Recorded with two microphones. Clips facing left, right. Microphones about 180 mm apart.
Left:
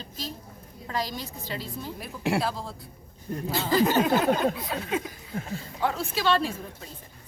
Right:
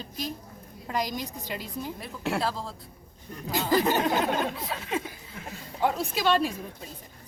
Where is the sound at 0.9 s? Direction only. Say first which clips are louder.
Right 1 dB; 15° right (ahead or behind).